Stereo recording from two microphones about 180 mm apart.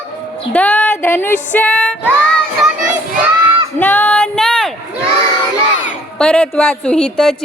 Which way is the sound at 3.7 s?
10° left (ahead or behind).